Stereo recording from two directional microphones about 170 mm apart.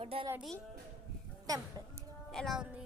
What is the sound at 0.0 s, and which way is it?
Speech, 35° right (ahead or behind).